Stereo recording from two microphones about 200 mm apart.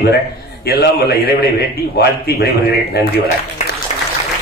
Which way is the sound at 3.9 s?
35° left (ahead or behind).